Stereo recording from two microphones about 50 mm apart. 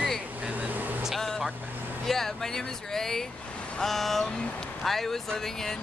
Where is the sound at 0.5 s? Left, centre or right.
Right.